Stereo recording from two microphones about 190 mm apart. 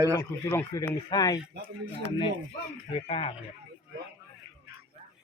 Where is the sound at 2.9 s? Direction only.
30° left (ahead or behind).